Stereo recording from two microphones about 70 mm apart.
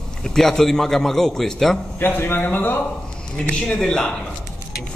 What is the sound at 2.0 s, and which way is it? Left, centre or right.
Speech, left.